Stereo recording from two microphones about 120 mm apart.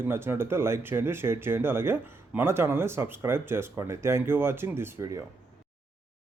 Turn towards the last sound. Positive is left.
turn(degrees=-20)  # may be behind; listen again after turning